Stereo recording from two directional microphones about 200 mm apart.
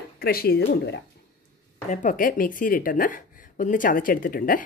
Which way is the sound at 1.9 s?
40° left (ahead or behind).